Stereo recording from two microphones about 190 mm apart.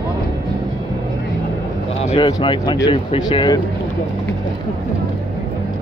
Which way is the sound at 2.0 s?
35° left (ahead or behind).